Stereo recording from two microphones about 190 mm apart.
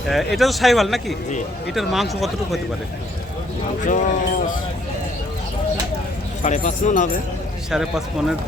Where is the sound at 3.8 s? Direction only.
40° left (ahead or behind).